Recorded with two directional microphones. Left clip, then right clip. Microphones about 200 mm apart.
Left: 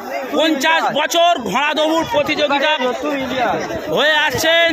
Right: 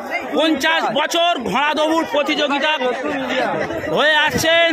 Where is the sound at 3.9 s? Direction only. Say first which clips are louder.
Left 1 dB; centre (ahead or behind).